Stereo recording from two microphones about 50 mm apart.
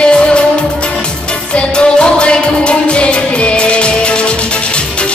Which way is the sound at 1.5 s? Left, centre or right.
Centre.